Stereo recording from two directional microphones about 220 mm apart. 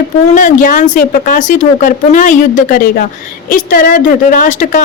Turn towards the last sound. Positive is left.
turn(degrees=35)  # may be behind; listen again after turning